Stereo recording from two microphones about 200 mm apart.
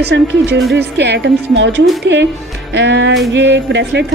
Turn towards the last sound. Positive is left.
turn(degrees=-60)  # may be behind; listen again after turning